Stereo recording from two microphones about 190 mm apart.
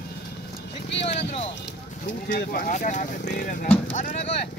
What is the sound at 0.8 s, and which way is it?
Vehicle, 65° left (ahead or behind).